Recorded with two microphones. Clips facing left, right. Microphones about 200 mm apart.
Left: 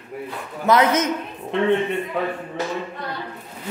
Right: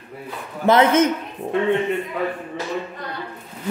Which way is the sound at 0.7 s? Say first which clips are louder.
Right 3 dB; 30° right (ahead or behind).